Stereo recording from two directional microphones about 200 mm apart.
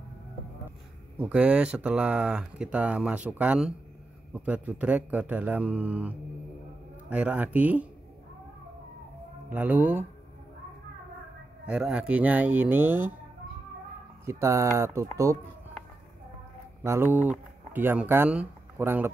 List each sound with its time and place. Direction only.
1.2 s speech: 5° right (ahead or behind)
9.5 s speech: 10° right (ahead or behind)
11.6 s speech: 5° right (ahead or behind)
14.2 s speech: 15° right (ahead or behind)
16.8 s speech: 10° right (ahead or behind)